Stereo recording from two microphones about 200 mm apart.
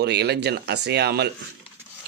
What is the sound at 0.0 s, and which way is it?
Speech, 55° right (ahead or behind).